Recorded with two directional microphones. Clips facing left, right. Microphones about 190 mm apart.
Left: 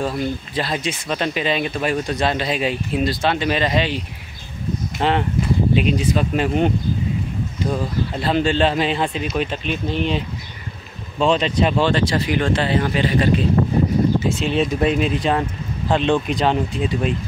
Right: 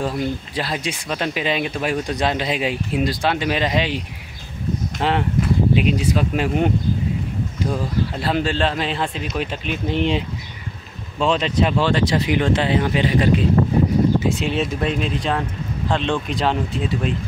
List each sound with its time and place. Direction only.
0.0 s speech: 10° right (ahead or behind)
5.0 s speech: 5° right (ahead or behind)
7.7 s speech: 5° right (ahead or behind)
9.8 s speech: 20° right (ahead or behind)
11.1 s speech: 5° right (ahead or behind)
12.0 s speech: 20° right (ahead or behind); by 17.1 s centre (ahead or behind)